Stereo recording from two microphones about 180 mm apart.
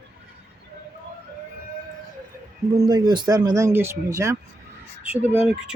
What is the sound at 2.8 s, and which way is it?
Speech, 25° right (ahead or behind).